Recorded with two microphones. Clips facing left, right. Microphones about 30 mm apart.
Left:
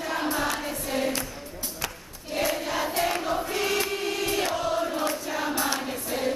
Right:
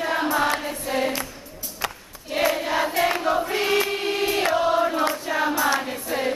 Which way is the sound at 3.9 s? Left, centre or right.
Right.